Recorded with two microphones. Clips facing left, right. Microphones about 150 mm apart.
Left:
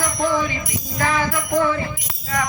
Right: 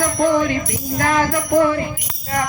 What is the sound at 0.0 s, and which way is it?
Music, 55° right (ahead or behind).